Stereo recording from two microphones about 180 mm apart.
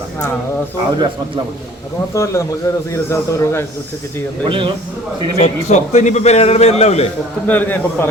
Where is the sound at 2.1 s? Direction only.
15° left (ahead or behind).